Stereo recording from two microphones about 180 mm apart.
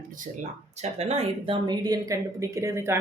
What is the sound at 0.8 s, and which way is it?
Speech, 35° right (ahead or behind).